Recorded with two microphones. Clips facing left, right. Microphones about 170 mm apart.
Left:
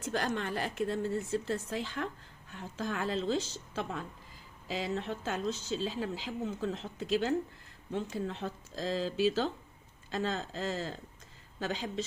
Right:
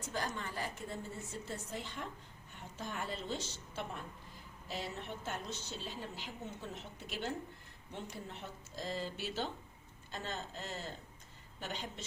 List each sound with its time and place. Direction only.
0.0 s a woman's voice: 85° left